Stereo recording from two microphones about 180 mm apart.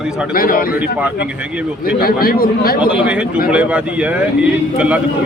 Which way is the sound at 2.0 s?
55° left (ahead or behind).